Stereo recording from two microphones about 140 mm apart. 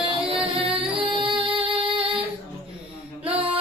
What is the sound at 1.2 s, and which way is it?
Music, 35° right (ahead or behind).